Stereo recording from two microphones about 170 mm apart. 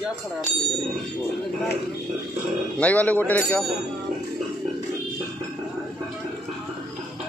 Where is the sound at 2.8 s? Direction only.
10° left (ahead or behind).